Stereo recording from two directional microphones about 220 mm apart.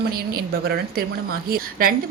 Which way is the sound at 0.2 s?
45° right (ahead or behind).